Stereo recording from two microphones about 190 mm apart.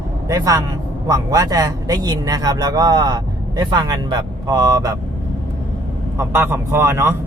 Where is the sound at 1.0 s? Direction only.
20° right (ahead or behind).